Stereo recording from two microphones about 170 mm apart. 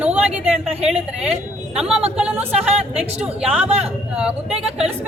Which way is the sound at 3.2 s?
10° right (ahead or behind).